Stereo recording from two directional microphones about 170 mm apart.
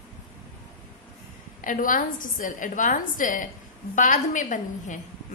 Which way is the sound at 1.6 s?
50° left (ahead or behind).